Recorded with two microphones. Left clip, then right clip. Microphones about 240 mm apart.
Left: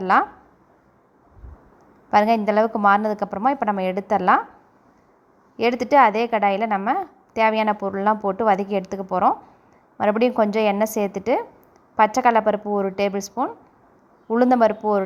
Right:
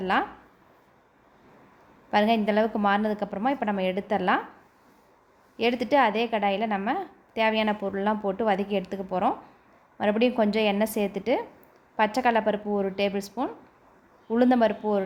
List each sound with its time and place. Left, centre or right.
0.0 s speech: centre
2.0 s a woman's voice: centre
5.5 s a woman's voice: centre